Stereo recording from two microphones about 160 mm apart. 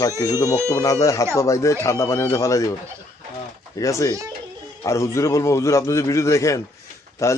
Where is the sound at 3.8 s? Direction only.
20° left (ahead or behind).